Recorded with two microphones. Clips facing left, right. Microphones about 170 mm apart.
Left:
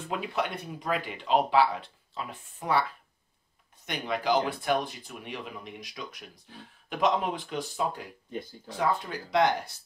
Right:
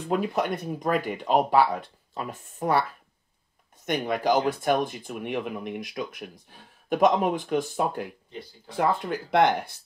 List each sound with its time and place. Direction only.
0.1 s speech: 45° right (ahead or behind)
3.8 s speech: 50° right (ahead or behind)